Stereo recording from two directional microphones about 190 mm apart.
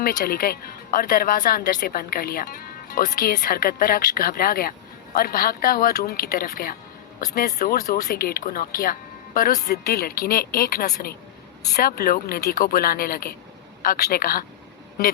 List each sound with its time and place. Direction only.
0.0 s a woman's voice: 50° left (ahead or behind)